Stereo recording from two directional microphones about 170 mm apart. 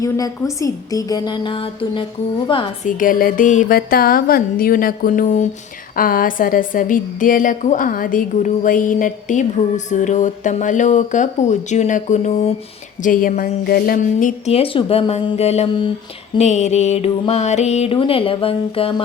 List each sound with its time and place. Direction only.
0.0 s a woman's voice: 20° left (ahead or behind)
2.8 s a woman's voice: 55° left (ahead or behind)
13.0 s speech: 50° left (ahead or behind); by 19.0 s 30° left (ahead or behind)